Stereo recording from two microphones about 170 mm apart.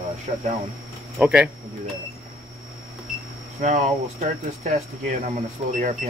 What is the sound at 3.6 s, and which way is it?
Speech, 45° right (ahead or behind).